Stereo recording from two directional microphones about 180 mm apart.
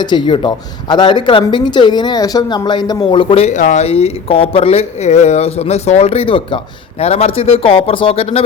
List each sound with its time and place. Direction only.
0.0 s a man's voice: 25° left (ahead or behind)